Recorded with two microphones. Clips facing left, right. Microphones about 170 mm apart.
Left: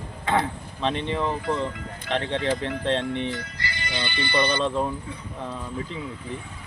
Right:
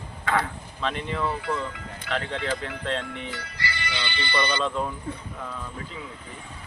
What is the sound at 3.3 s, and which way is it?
Speech, 50° left (ahead or behind).